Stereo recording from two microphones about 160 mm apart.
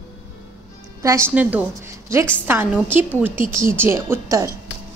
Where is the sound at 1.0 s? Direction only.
15° right (ahead or behind).